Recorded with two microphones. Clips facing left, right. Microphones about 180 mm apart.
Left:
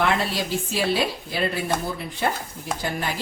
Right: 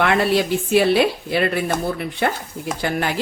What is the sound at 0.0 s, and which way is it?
Speech, 65° right (ahead or behind).